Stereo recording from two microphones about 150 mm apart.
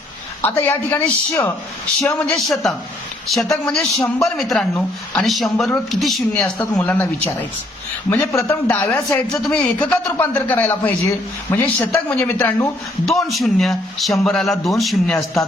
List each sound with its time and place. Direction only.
0.4 s a man's voice: 15° left (ahead or behind)
13.1 s speech: centre (ahead or behind)